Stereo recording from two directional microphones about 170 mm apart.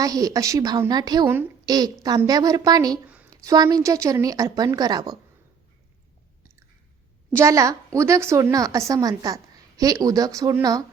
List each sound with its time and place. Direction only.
0.0 s a woman's voice: 20° right (ahead or behind)
7.3 s a woman's voice: 20° right (ahead or behind)